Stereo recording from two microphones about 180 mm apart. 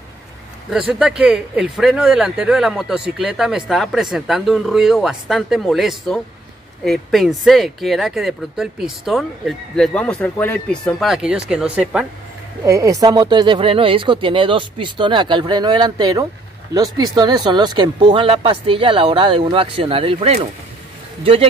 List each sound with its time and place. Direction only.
0.7 s speech: 5° right (ahead or behind)
12.6 s speech: 15° right (ahead or behind)